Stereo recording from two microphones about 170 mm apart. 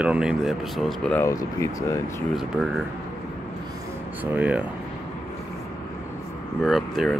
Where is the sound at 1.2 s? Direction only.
20° left (ahead or behind).